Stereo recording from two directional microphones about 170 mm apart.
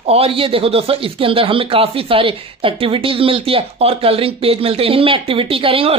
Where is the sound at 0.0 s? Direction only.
35° right (ahead or behind).